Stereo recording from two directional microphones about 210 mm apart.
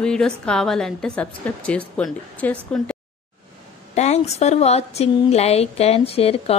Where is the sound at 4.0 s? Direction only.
30° left (ahead or behind).